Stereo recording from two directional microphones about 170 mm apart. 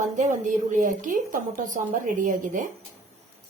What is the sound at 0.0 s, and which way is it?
A woman's voice, 45° right (ahead or behind).